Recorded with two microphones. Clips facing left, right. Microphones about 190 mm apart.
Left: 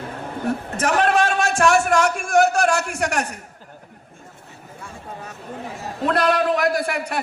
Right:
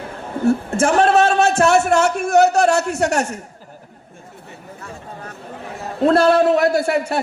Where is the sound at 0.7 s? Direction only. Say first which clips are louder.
Right 2 dB; 30° right (ahead or behind).